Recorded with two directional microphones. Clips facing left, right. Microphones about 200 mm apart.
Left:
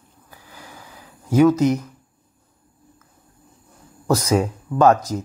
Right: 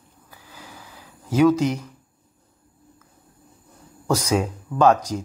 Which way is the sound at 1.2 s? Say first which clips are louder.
Left 2 dB; 10° left (ahead or behind).